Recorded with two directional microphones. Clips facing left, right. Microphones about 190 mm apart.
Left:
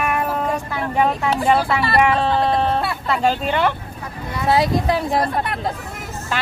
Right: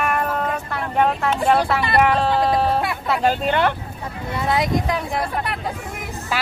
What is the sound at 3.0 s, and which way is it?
Speech, centre (ahead or behind).